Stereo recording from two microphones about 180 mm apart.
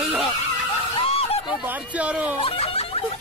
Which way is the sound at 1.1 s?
30° left (ahead or behind).